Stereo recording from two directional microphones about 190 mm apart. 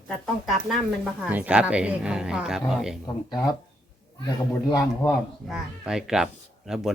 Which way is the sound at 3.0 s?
20° left (ahead or behind).